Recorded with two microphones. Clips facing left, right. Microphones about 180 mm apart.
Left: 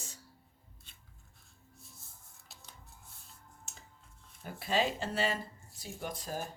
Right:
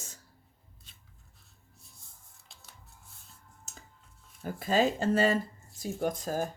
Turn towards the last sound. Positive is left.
turn(degrees=-45)  # may be behind; listen again after turning